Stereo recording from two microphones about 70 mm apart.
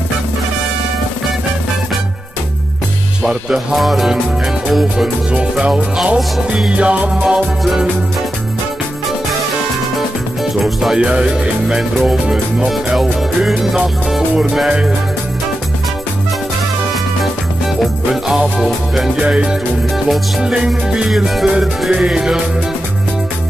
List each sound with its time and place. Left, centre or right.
3.3 s music: centre
5.3 s speech: centre
6.1 s music: centre
6.7 s speech: centre
9.9 s music: centre
11.0 s speech: centre
17.7 s music: centre
20.5 s speech: centre